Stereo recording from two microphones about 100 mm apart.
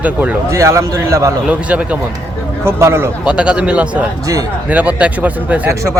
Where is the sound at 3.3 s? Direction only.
10° right (ahead or behind).